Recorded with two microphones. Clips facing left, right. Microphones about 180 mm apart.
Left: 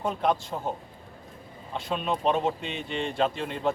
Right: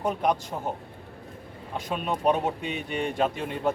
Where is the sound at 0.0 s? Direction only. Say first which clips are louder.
Right 1 dB; 15° right (ahead or behind).